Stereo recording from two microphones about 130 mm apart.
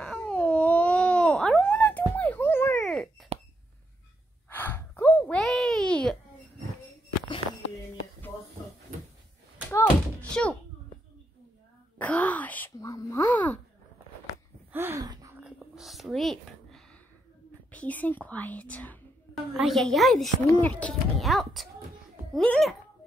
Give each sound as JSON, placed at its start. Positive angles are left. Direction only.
{"t": 0.0, "sound": "babbling", "side_deg": 10}
{"t": 2.8, "sound": "a sound", "side_deg": 0}
{"t": 4.5, "sound": "gasp", "side_deg": 15}
{"t": 5.3, "sound": "a sound", "side_deg": 5}
{"t": 9.7, "sound": "thunk", "side_deg": 10}
{"t": 12.0, "sound": "wail", "side_deg": 10}
{"t": 12.8, "sound": "a sound", "side_deg": 25}
{"t": 14.7, "sound": "gasp", "side_deg": -15}
{"t": 15.4, "sound": "whispering", "side_deg": -5}
{"t": 17.6, "sound": "whispering", "side_deg": 10}
{"t": 19.3, "sound": "a sound", "side_deg": 0}
{"t": 20.4, "sound": "speech", "side_deg": 15}
{"t": 21.2, "sound": "a child's voice", "side_deg": 0}